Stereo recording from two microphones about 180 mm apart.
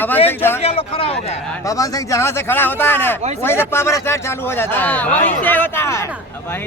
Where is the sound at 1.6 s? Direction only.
20° left (ahead or behind).